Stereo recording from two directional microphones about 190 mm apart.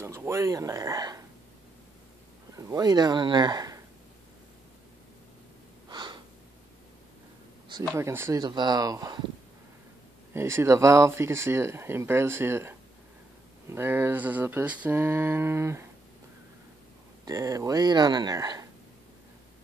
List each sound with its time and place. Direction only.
0.0 s speech: 15° right (ahead or behind)
2.5 s speech: 20° right (ahead or behind)
5.9 s gasp: 25° right (ahead or behind)
8.0 s speech: 15° right (ahead or behind)
10.3 s speech: 15° right (ahead or behind)
17.2 s speech: 15° right (ahead or behind)